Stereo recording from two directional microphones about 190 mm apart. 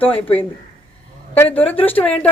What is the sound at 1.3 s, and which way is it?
Speech, 10° left (ahead or behind).